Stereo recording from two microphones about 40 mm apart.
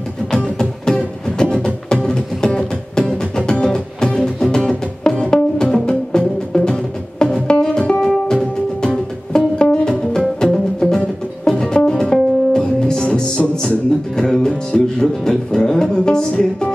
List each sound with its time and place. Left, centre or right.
0.6 s music: centre
16.3 s music: left